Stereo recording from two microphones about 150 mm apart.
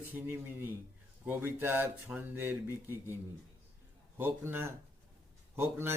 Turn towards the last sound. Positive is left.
turn(degrees=-15)  # may be behind; listen again after turning